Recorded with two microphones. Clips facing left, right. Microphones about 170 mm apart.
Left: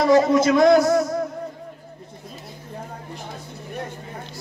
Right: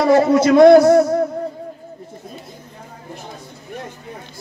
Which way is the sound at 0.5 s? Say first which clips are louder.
Right 10 dB; 30° right (ahead or behind).